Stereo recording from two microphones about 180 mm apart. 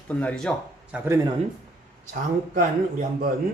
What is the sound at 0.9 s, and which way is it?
Speech, 15° right (ahead or behind).